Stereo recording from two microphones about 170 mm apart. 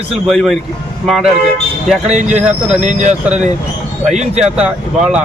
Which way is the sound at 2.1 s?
45° right (ahead or behind).